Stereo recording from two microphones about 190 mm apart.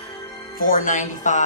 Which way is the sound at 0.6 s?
45° left (ahead or behind).